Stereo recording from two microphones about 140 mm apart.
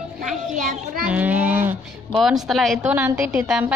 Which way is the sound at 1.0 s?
10° right (ahead or behind).